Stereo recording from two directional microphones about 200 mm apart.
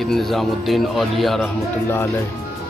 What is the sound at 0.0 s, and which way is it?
Speech, centre (ahead or behind).